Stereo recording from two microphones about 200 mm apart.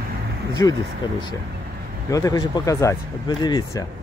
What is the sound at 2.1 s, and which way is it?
Speech, 15° left (ahead or behind).